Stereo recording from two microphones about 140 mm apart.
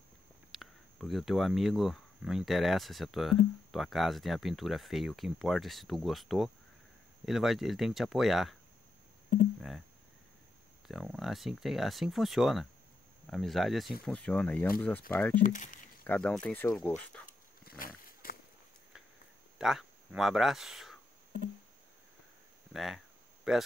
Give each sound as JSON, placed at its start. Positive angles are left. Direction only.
{"t": 0.5, "sound": "speech", "side_deg": 0}
{"t": 10.9, "sound": "speech", "side_deg": 0}
{"t": 15.4, "sound": "speech", "side_deg": 70}
{"t": 16.0, "sound": "speech", "side_deg": 10}
{"t": 17.6, "sound": "roaring cats", "side_deg": 90}
{"t": 19.6, "sound": "speech", "side_deg": 0}
{"t": 22.7, "sound": "speech", "side_deg": 0}